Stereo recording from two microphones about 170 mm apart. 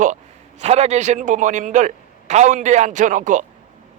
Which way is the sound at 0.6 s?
40° right (ahead or behind).